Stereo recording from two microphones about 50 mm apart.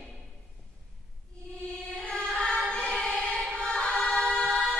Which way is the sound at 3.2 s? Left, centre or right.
Centre.